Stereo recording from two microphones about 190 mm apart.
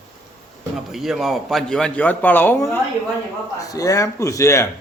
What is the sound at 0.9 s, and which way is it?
A man's voice, centre (ahead or behind).